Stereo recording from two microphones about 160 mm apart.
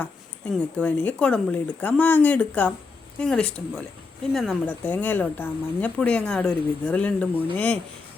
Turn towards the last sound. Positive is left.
turn(degrees=10)  # may be behind; listen again after turning